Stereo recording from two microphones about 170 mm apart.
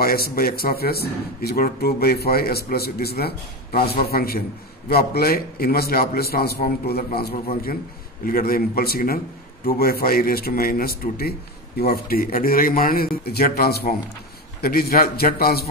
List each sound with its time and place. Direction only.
0.0 s speech: 60° left (ahead or behind)